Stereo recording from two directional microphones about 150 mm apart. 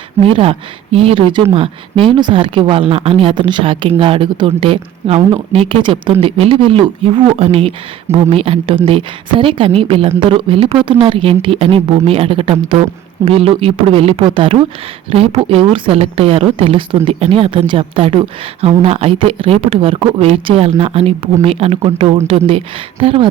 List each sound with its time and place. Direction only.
0.2 s speech: 40° right (ahead or behind)